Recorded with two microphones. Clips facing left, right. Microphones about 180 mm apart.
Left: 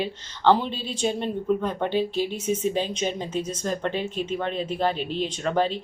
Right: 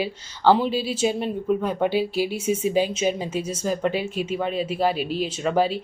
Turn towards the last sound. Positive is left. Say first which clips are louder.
# right 2 dB
turn(degrees=-10)  # may be behind; listen again after turning